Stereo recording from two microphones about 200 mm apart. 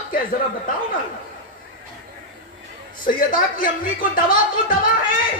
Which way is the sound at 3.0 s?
45° left (ahead or behind).